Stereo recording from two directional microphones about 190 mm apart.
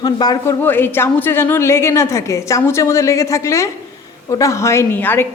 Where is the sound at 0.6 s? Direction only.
10° left (ahead or behind).